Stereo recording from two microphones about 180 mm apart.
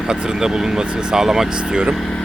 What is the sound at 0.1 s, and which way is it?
Speech, 5° right (ahead or behind).